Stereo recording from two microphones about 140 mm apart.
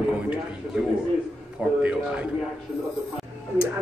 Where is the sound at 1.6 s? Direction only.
10° right (ahead or behind).